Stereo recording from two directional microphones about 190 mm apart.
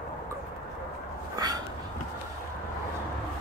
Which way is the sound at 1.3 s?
20° right (ahead or behind).